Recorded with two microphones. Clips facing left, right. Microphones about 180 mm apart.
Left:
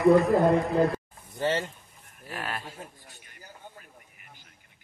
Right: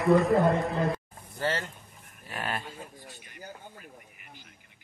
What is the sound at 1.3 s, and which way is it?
Speech, 25° left (ahead or behind).